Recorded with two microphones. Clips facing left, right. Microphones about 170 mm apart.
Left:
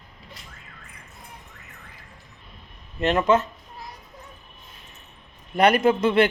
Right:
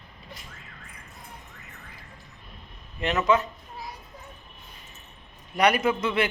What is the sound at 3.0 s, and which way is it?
Speech, 40° left (ahead or behind).